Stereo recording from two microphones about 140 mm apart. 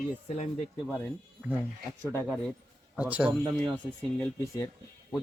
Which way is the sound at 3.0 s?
10° right (ahead or behind).